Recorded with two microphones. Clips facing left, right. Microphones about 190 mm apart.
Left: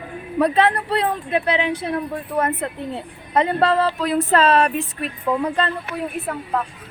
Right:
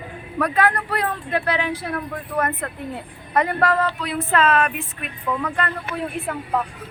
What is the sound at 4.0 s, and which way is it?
Speech, 40° left (ahead or behind).